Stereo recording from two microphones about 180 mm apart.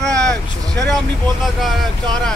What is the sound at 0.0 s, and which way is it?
Vehicle, 5° left (ahead or behind).